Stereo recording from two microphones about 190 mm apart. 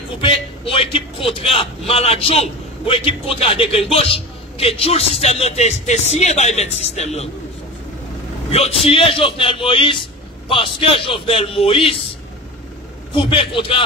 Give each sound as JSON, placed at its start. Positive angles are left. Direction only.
{"t": 0.2, "sound": "a man's voice", "side_deg": 30}
{"t": 8.5, "sound": "speech", "side_deg": 35}
{"t": 13.1, "sound": "speech", "side_deg": 25}